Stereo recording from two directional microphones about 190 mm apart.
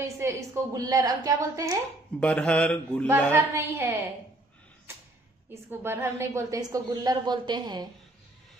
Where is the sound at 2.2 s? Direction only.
5° left (ahead or behind).